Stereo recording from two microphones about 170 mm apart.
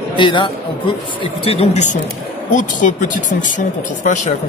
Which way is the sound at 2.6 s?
50° left (ahead or behind).